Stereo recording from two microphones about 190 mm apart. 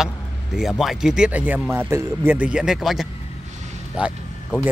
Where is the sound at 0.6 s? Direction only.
Centre (ahead or behind).